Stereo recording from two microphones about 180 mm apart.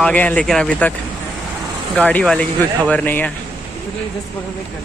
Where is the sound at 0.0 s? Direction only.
10° left (ahead or behind).